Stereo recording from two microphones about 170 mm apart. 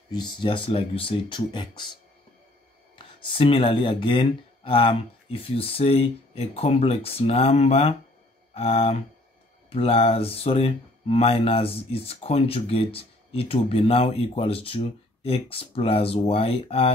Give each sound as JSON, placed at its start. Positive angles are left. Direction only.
{"t": 0.1, "sound": "speech", "side_deg": 25}
{"t": 3.0, "sound": "speech", "side_deg": 30}